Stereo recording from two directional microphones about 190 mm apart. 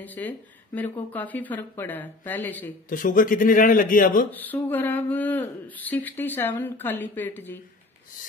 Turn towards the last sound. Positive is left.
turn(degrees=10)  # may be behind; listen again after turning